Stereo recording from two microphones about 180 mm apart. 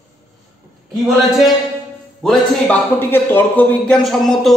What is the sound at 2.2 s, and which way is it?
A man's voice, 10° left (ahead or behind).